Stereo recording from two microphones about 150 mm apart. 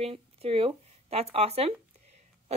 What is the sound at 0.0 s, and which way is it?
A woman's voice, 40° right (ahead or behind).